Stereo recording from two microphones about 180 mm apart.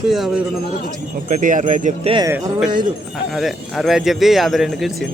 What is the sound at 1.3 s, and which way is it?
Speech, 45° right (ahead or behind).